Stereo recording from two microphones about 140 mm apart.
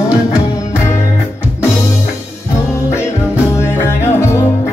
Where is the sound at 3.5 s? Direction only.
20° left (ahead or behind).